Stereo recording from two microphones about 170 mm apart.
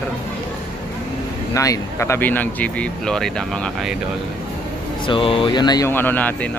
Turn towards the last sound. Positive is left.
turn(degrees=10)  # may be behind; listen again after turning